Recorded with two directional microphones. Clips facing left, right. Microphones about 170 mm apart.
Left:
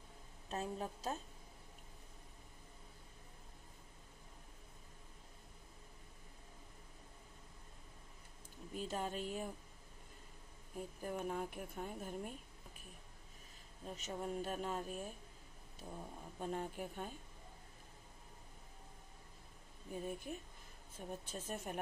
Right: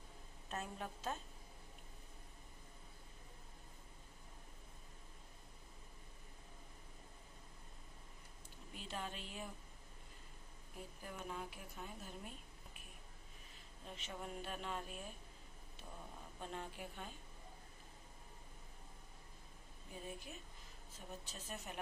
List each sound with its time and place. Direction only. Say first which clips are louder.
0.5 s speech: left 4 dB; 30° left (ahead or behind)
8.7 s speech: left 6 dB; 45° left (ahead or behind)
11.0 s speech: left 7 dB; 45° left (ahead or behind)
13.8 s speech: left 6 dB; 40° left (ahead or behind)
16.3 s a woman's voice: left 6 dB; 45° left (ahead or behind)
19.9 s a woman's voice: left 7 dB; 50° left (ahead or behind)